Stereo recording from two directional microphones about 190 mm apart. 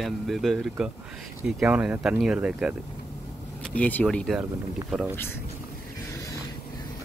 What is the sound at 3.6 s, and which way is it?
Speech, 5° left (ahead or behind).